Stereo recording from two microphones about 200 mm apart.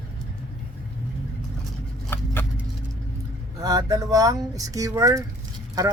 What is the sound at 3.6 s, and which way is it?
Speech, 15° right (ahead or behind).